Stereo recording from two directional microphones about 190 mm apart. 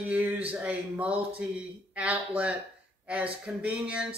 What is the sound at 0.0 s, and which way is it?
Speech, 10° right (ahead or behind).